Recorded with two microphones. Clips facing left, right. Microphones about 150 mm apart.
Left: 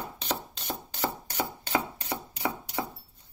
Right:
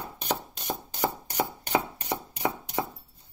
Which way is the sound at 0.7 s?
15° right (ahead or behind).